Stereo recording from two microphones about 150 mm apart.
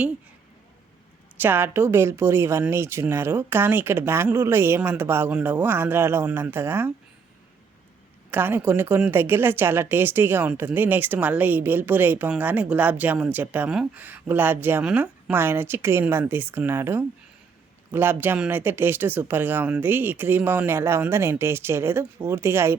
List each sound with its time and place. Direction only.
1.4 s speech: 15° right (ahead or behind)
8.3 s speech: 15° right (ahead or behind)